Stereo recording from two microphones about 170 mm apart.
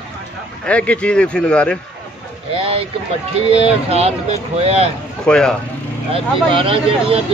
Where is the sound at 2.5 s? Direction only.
35° right (ahead or behind).